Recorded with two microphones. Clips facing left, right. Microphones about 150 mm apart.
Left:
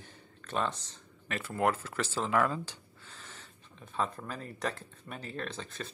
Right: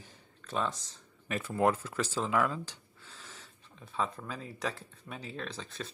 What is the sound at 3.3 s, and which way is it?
Speech, centre (ahead or behind).